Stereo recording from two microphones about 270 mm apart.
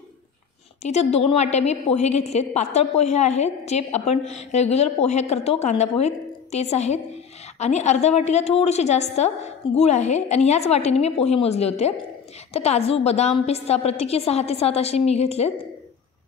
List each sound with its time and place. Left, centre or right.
0.8 s a woman's voice: left